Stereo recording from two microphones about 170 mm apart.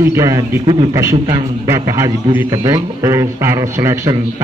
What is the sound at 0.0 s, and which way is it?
A man's voice, 15° right (ahead or behind).